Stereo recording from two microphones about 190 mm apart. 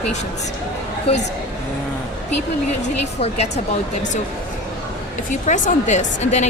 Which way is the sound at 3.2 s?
35° left (ahead or behind).